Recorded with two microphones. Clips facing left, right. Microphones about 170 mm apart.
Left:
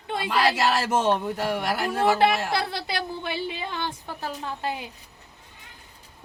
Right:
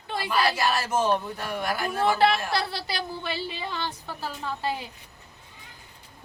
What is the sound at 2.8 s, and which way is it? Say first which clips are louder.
A woman's voice: left 2 dB; 20° left (ahead or behind).